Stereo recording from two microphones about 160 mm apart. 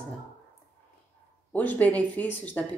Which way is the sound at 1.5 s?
10° left (ahead or behind).